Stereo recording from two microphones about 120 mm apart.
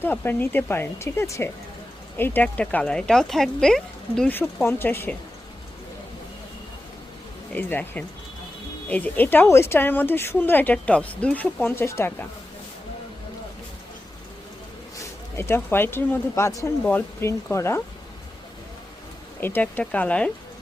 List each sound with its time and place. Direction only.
0.0 s speech: 15° left (ahead or behind)
4.6 s speech: 20° left (ahead or behind)
7.5 s speech: 15° left (ahead or behind)
14.9 s speech: 25° left (ahead or behind)
19.4 s speech: 15° left (ahead or behind)